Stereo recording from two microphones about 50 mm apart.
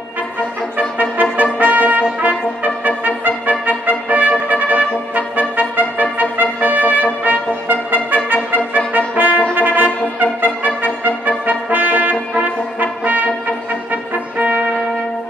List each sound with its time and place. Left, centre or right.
0.7 s trumpet: right
2.2 s brass instrument: right
3.1 s trumpet: right
9.6 s music: right